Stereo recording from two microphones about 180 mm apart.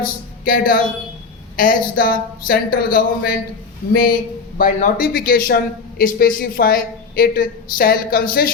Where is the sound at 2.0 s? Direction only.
50° left (ahead or behind).